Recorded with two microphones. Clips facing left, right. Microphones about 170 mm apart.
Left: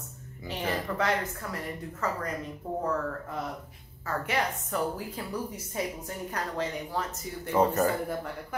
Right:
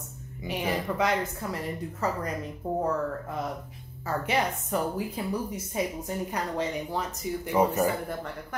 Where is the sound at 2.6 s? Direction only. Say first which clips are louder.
Right 4 dB; 20° right (ahead or behind).